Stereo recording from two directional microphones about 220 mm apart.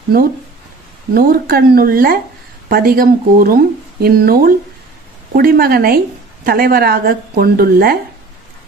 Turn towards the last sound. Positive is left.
turn(degrees=-45)  # may be behind; listen again after turning